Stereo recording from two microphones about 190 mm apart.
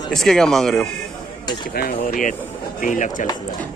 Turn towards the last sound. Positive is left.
turn(degrees=40)  # may be behind; listen again after turning